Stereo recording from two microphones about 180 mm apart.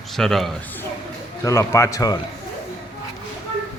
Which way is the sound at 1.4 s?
15° left (ahead or behind).